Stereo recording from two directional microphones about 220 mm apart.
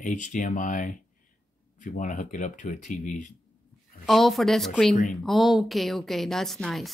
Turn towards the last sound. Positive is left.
turn(degrees=0)  # may be behind; listen again after turning